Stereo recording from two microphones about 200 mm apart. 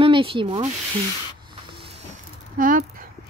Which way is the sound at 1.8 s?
30° right (ahead or behind).